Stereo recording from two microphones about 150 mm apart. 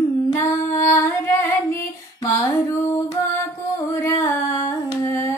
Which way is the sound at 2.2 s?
20° left (ahead or behind).